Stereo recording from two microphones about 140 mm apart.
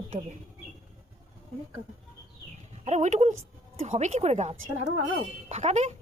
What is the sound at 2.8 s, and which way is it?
Speech, 55° right (ahead or behind).